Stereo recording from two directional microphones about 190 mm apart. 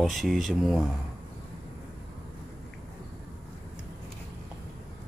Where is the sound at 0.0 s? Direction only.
Centre (ahead or behind).